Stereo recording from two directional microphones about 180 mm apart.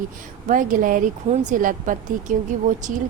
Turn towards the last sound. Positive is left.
turn(degrees=-45)  # may be behind; listen again after turning